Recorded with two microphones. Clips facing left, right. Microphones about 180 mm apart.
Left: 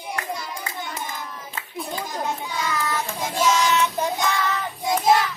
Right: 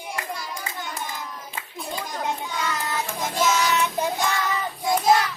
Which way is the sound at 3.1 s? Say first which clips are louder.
Left 1 dB; 10° left (ahead or behind).